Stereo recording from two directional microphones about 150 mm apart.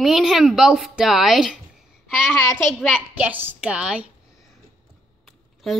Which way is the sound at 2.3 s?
20° left (ahead or behind).